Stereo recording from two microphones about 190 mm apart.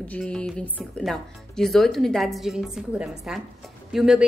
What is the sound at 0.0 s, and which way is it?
A woman's voice, 5° left (ahead or behind).